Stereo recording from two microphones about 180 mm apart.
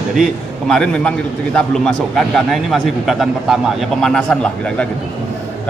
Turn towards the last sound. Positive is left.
turn(degrees=5)  # may be behind; listen again after turning